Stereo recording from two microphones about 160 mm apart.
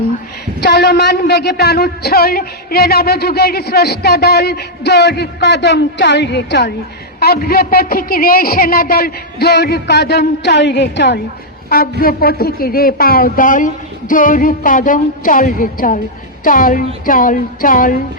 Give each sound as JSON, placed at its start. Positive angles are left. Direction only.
{"t": 0.6, "sound": "speech", "side_deg": 90}
{"t": 7.2, "sound": "speech", "side_deg": 75}
{"t": 11.7, "sound": "speech", "side_deg": 70}